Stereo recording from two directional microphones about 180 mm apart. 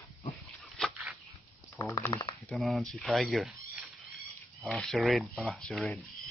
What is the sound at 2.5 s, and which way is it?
Speech, centre (ahead or behind).